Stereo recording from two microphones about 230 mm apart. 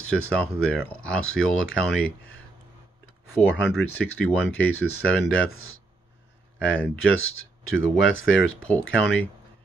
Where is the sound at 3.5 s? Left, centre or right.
Centre.